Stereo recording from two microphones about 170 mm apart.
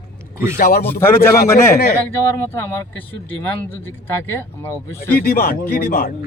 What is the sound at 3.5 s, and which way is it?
Speech, 15° left (ahead or behind).